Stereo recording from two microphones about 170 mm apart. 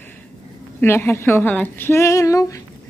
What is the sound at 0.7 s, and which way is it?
A woman's voice, 15° left (ahead or behind).